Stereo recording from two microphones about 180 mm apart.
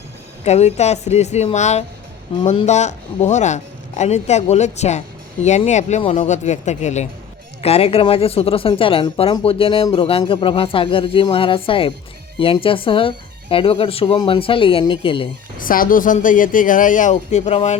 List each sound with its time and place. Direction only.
0.4 s a man's voice: 35° left (ahead or behind)
15.5 s speech: 50° left (ahead or behind)